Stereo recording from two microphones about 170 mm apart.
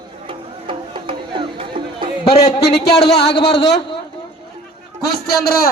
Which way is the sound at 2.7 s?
75° left (ahead or behind).